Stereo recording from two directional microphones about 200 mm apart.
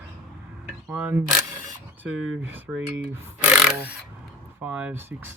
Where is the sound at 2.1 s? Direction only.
70° right (ahead or behind).